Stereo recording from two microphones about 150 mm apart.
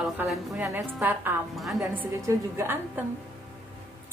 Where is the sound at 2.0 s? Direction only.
15° right (ahead or behind).